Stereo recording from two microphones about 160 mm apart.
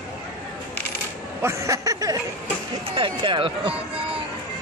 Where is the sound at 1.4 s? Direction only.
20° right (ahead or behind).